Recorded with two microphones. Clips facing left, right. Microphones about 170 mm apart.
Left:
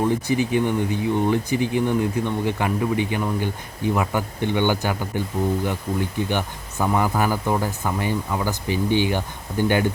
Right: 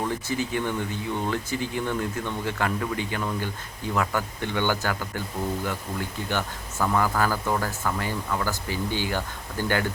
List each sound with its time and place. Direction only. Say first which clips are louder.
0.0 s speech: left 7 dB; 15° left (ahead or behind)